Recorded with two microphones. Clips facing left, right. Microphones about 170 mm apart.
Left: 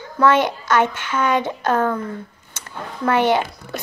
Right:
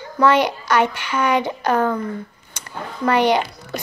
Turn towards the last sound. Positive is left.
turn(degrees=-15)  # may be behind; listen again after turning